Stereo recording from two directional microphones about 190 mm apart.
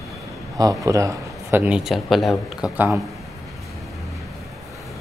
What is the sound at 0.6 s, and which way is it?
Speech, 15° right (ahead or behind).